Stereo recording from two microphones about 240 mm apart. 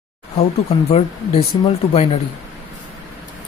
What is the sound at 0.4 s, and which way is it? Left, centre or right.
Speech, left.